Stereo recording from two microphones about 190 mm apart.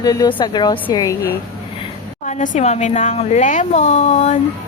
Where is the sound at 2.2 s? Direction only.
40° left (ahead or behind).